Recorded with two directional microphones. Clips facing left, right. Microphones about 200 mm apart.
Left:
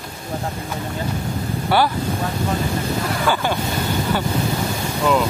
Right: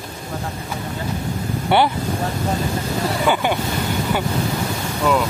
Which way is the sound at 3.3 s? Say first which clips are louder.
Right 2 dB; 20° right (ahead or behind).